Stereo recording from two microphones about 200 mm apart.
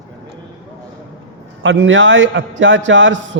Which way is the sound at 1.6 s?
70° right (ahead or behind).